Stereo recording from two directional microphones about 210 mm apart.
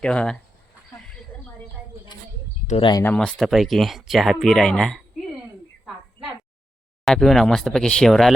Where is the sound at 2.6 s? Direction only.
25° left (ahead or behind).